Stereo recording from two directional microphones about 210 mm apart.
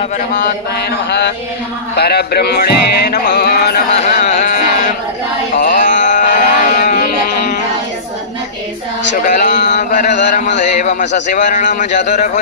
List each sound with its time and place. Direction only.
2.0 s music: 50° left (ahead or behind)
3.9 s carnatic music: 35° left (ahead or behind)
5.5 s music: 40° left (ahead or behind)
9.1 s speech: 35° left (ahead or behind)
9.8 s a sound: 35° left (ahead or behind)
11.3 s a man's voice: 35° left (ahead or behind)